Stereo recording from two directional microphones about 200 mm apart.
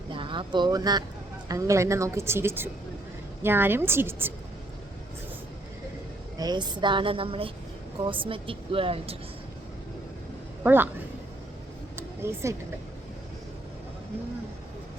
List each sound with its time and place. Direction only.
0.1 s speech: 25° right (ahead or behind)
6.4 s a woman's voice: 20° right (ahead or behind)
10.6 s speech: 10° right (ahead or behind)
11.9 s vehicle: 15° right (ahead or behind)